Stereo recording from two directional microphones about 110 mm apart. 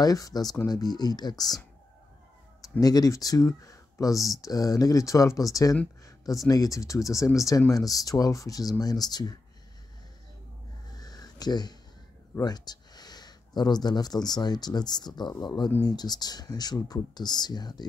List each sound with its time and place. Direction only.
0.0 s speech: 35° left (ahead or behind)
2.8 s speech: 35° left (ahead or behind)
11.0 s a sound: 35° left (ahead or behind)
12.4 s speech: 40° left (ahead or behind)